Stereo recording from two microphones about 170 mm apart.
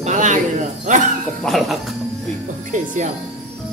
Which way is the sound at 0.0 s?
45° right (ahead or behind).